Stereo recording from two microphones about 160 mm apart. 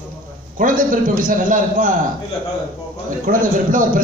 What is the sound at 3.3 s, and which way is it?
Speech, 55° right (ahead or behind).